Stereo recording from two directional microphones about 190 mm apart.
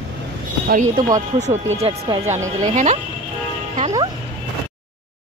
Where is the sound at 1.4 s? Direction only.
35° right (ahead or behind).